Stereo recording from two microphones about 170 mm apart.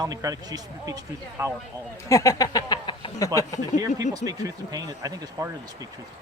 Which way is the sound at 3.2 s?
20° left (ahead or behind).